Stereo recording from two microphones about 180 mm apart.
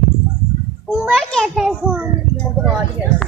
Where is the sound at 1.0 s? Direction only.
Centre (ahead or behind).